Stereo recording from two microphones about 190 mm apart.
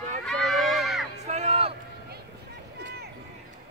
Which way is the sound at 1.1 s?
35° right (ahead or behind).